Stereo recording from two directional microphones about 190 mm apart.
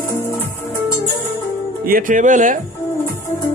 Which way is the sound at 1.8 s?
45° right (ahead or behind).